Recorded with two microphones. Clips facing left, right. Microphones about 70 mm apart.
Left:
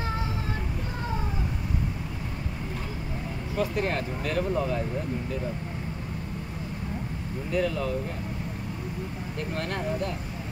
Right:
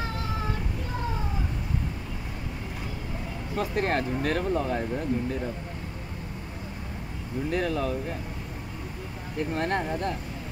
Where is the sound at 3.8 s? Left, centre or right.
Right.